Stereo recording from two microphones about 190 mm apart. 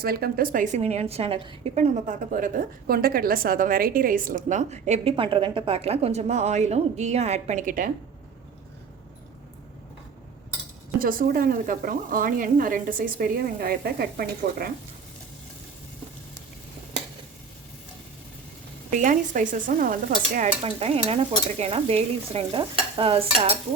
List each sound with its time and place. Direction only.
0.0 s a woman's voice: 50° right (ahead or behind)
11.0 s speech: 50° right (ahead or behind)
18.9 s speech: 40° right (ahead or behind)
20.7 s a woman's voice: 30° right (ahead or behind)